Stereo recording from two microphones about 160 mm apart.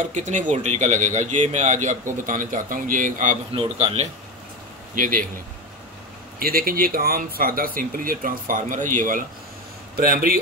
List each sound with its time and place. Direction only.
0.0 s speech: 50° right (ahead or behind)
3.7 s speech: 40° right (ahead or behind)
4.9 s speech: 60° right (ahead or behind)
6.4 s speech: 65° right (ahead or behind)